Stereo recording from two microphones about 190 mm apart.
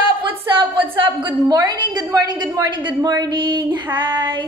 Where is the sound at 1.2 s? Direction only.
20° right (ahead or behind).